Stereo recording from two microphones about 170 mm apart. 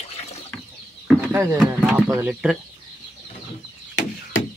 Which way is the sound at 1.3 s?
15° right (ahead or behind).